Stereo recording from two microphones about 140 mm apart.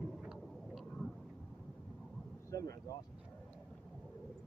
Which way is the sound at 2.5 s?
25° left (ahead or behind).